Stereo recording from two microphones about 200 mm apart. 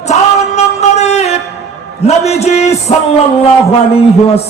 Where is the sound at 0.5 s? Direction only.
35° left (ahead or behind).